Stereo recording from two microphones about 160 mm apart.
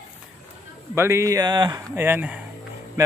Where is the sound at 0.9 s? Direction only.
15° right (ahead or behind).